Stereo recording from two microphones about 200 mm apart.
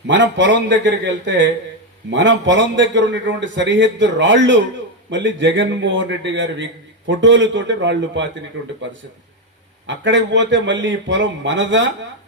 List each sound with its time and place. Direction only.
0.1 s a man's voice: 65° right (ahead or behind)
9.8 s a man's voice: 65° right (ahead or behind)